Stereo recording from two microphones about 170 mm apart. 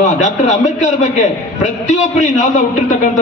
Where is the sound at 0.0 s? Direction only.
45° left (ahead or behind).